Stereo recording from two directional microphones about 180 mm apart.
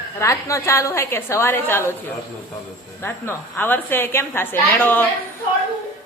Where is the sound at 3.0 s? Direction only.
10° left (ahead or behind).